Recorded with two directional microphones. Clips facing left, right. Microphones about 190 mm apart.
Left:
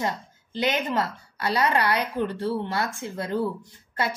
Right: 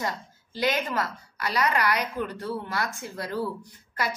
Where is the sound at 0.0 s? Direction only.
25° left (ahead or behind).